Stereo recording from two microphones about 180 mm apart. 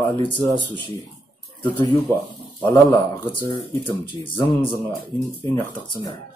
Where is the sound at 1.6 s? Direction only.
10° left (ahead or behind).